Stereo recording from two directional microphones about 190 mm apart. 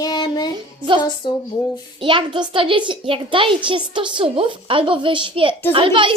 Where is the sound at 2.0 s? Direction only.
25° right (ahead or behind).